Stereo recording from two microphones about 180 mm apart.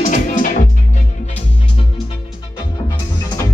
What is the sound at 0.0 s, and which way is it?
Music, 45° left (ahead or behind).